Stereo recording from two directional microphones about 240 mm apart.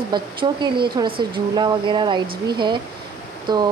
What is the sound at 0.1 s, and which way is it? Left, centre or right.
Speech, centre.